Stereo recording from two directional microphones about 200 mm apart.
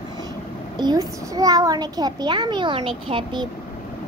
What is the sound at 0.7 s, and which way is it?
A child's voice, 20° right (ahead or behind).